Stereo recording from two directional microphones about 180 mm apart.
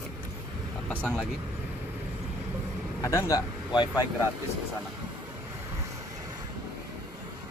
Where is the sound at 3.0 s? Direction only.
20° left (ahead or behind).